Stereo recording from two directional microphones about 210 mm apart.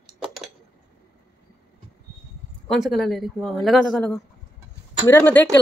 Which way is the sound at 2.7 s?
Centre (ahead or behind).